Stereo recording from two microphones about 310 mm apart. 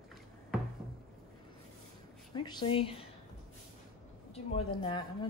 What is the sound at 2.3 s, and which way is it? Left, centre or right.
Speech, centre.